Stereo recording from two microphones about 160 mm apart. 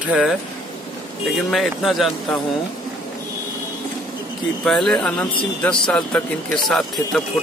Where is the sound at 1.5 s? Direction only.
Centre (ahead or behind).